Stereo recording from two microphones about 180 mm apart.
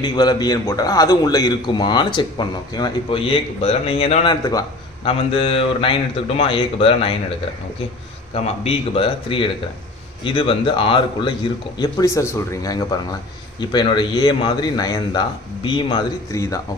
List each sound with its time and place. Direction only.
0.0 s a man's voice: 25° left (ahead or behind)
8.4 s a man's voice: 35° left (ahead or behind); by 16.6 s 20° left (ahead or behind)